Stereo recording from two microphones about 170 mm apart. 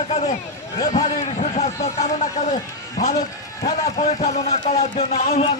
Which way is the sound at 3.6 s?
40° left (ahead or behind).